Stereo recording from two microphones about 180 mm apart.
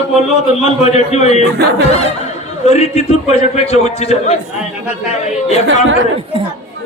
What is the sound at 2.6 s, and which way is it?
A man's voice, 35° left (ahead or behind).